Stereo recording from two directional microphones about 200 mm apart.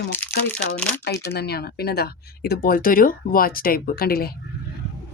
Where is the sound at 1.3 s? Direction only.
50° left (ahead or behind).